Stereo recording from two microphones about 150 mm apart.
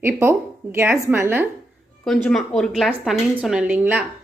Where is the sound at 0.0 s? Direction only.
15° right (ahead or behind).